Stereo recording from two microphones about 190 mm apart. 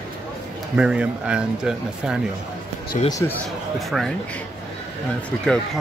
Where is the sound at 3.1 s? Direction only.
15° left (ahead or behind).